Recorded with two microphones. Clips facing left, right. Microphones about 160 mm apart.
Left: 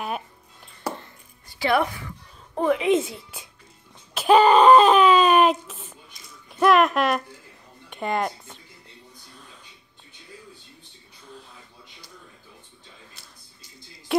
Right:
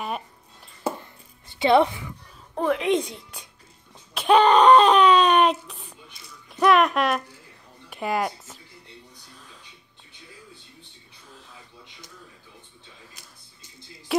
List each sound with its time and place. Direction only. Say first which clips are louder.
1.5 s speech: right 4 dB; 25° right (ahead or behind)
2.5 s a woman's voice: left 2 dB; centre (ahead or behind)
4.1 s a sound: left 1 dB; 5° left (ahead or behind)
6.5 s a woman's voice: left 1 dB; centre (ahead or behind)